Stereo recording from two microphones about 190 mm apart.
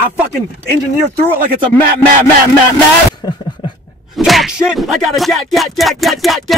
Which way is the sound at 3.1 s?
20° left (ahead or behind).